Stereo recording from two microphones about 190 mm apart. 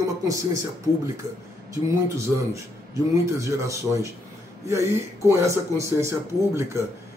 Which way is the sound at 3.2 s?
15° right (ahead or behind).